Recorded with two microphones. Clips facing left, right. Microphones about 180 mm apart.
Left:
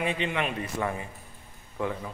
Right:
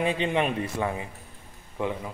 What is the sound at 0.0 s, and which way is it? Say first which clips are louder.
Speech: right 4 dB; 30° right (ahead or behind).